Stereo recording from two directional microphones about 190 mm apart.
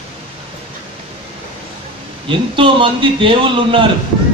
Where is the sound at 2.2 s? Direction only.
25° right (ahead or behind).